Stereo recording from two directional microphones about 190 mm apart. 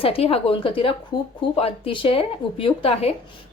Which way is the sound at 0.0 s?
30° left (ahead or behind).